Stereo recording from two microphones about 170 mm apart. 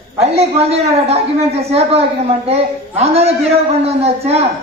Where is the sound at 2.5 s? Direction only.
40° right (ahead or behind).